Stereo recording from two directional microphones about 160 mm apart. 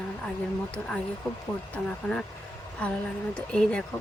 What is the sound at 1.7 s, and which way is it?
Speech, 5° left (ahead or behind).